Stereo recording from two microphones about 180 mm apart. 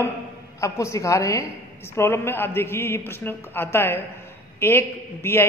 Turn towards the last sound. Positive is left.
turn(degrees=15)  # may be behind; listen again after turning